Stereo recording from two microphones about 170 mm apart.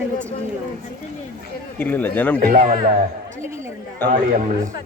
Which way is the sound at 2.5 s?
50° right (ahead or behind).